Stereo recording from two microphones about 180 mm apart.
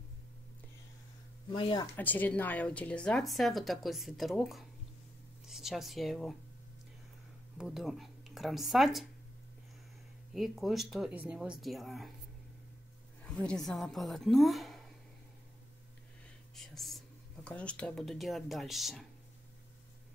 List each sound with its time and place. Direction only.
1.5 s speech: 30° left (ahead or behind)
2.0 s speech: 10° left (ahead or behind)
7.5 s speech: centre (ahead or behind)
10.3 s speech: centre (ahead or behind)
13.2 s speech: 5° left (ahead or behind)
16.5 s whispering: centre (ahead or behind)
17.5 s speech: 5° left (ahead or behind)